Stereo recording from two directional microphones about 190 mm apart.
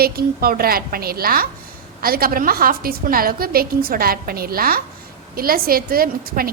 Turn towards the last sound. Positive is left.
turn(degrees=-50)  # may be behind; listen again after turning